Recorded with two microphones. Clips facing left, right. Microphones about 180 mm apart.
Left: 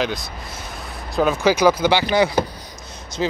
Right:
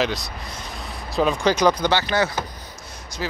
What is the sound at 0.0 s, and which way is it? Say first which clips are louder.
Speech: even; centre (ahead or behind).